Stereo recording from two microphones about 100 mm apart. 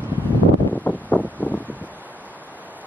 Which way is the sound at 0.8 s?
15° left (ahead or behind).